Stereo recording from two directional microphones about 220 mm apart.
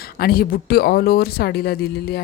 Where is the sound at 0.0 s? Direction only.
45° left (ahead or behind).